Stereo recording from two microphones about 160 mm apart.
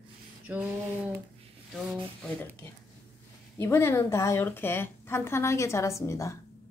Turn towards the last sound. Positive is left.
turn(degrees=20)  # may be behind; listen again after turning